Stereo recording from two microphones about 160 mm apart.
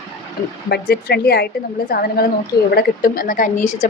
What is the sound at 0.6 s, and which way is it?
A woman's voice, 90° left.